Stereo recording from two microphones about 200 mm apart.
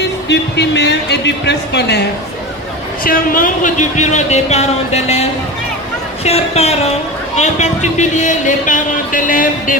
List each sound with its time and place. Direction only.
0.3 s a man's voice: 60° left (ahead or behind)
3.0 s speech: 45° left (ahead or behind)